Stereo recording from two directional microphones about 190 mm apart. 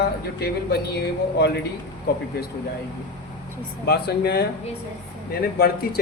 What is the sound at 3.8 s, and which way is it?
Speech, 60° left (ahead or behind).